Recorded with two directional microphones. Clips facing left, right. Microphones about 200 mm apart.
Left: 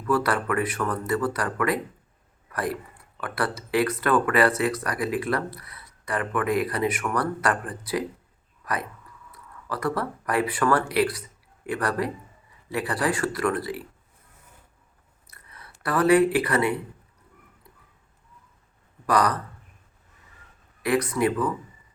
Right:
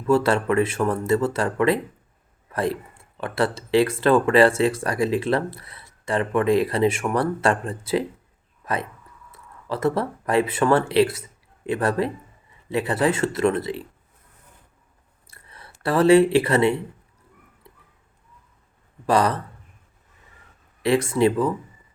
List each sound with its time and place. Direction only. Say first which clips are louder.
0.1 s speech: right 5 dB; 25° right (ahead or behind)
15.3 s speech: right 2 dB; 30° right (ahead or behind)
19.0 s speech: right 3 dB; 25° right (ahead or behind)
20.8 s speech: right 4 dB; 25° right (ahead or behind)